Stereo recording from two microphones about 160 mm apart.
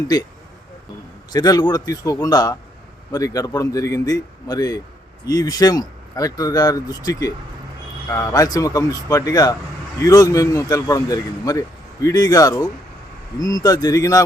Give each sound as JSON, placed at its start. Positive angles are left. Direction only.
{"t": 1.3, "sound": "speech", "side_deg": 25}